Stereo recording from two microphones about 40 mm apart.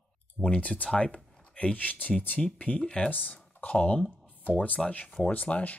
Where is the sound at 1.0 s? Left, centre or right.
Left.